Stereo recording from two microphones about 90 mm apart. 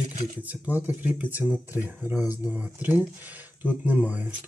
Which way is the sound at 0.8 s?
15° right (ahead or behind).